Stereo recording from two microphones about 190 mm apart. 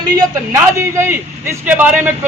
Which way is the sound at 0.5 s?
15° right (ahead or behind).